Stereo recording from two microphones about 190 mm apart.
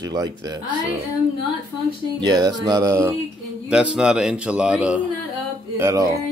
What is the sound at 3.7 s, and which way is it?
A man's voice, 5° right (ahead or behind).